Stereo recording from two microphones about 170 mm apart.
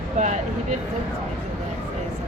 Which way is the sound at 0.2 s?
45° right (ahead or behind).